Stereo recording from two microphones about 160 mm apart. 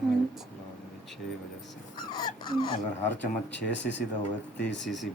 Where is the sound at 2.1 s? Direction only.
25° left (ahead or behind).